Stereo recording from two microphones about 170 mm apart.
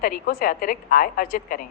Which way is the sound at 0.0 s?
60° left (ahead or behind).